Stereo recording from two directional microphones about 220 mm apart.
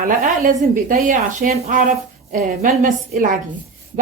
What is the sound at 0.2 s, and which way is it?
A woman's voice, 35° right (ahead or behind).